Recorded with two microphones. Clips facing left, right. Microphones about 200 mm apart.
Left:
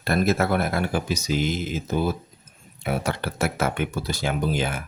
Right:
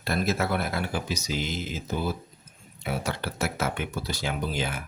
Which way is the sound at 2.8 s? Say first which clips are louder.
Left 4 dB; 55° left (ahead or behind).